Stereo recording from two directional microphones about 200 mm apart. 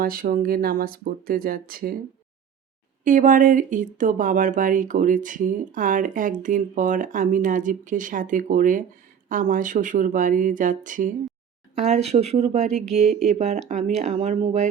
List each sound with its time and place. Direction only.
0.0 s speech: 45° right (ahead or behind)
3.0 s speech: 40° right (ahead or behind)